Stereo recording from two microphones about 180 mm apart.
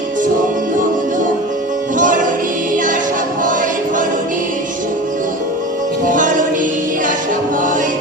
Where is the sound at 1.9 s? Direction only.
45° right (ahead or behind).